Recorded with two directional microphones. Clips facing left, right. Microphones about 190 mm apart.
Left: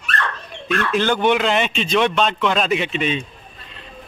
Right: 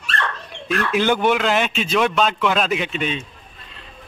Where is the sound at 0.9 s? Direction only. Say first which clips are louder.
Even; 10° right (ahead or behind).